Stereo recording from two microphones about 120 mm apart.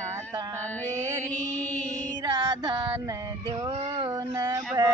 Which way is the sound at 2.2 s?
35° right (ahead or behind).